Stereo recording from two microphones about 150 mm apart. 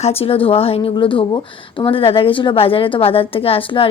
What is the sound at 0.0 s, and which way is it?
Speech, 40° left (ahead or behind).